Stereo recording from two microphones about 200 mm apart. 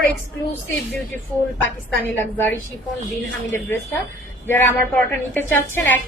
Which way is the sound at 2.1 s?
10° left (ahead or behind).